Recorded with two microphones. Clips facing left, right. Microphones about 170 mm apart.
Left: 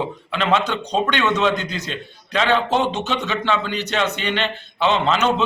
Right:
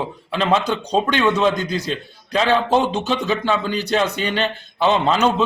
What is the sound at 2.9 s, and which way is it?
A man's voice, 35° right (ahead or behind).